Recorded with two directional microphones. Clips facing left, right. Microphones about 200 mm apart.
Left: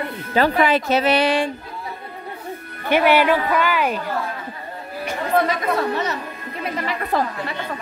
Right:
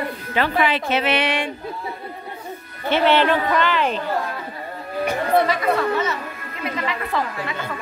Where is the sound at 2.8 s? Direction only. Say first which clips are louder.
Left 1 dB; 10° left (ahead or behind).